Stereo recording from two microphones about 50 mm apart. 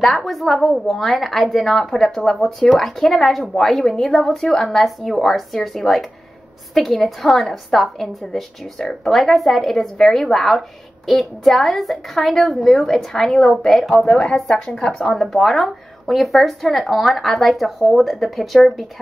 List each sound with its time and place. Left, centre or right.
0.0 s speech: centre
3.2 s speech: centre